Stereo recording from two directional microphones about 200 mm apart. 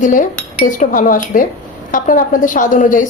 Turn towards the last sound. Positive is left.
turn(degrees=40)  # may be behind; listen again after turning